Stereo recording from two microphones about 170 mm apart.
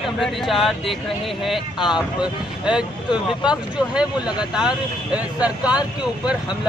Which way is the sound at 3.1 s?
25° left (ahead or behind).